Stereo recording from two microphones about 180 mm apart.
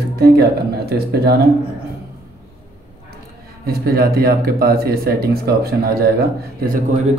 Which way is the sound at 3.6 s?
60° right (ahead or behind).